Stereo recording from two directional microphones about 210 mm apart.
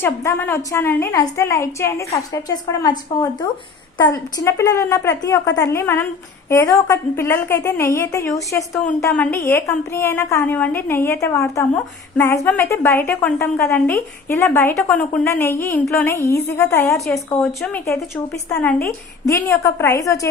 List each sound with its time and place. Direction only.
0.0 s a woman's voice: 10° left (ahead or behind)